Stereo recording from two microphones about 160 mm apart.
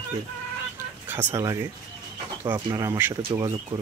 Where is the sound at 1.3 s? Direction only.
20° right (ahead or behind).